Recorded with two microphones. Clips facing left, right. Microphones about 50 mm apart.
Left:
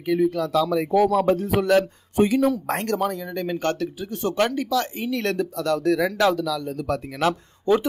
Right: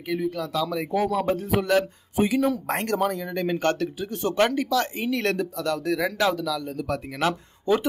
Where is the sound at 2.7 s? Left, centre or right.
Right.